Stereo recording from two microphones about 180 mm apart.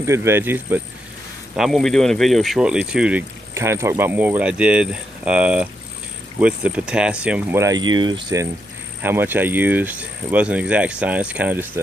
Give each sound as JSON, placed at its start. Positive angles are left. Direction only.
{"t": 0.0, "sound": "speech", "side_deg": -15}
{"t": 1.6, "sound": "speech", "side_deg": 0}
{"t": 7.6, "sound": "speech", "side_deg": -25}
{"t": 9.0, "sound": "speech", "side_deg": -10}